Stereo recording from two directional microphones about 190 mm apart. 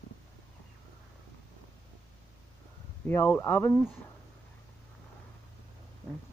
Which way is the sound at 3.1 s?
10° left (ahead or behind).